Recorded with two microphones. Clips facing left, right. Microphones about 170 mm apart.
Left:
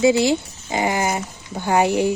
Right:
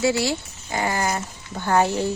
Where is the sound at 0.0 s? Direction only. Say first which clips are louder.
Left 6 dB; 20° left (ahead or behind).